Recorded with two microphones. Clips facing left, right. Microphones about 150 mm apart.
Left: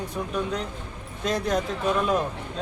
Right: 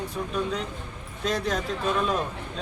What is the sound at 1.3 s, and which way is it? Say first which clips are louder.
Speech: left 4 dB; 15° left (ahead or behind).